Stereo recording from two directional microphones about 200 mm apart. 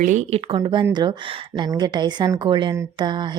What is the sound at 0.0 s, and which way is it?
A woman's voice, 35° right (ahead or behind).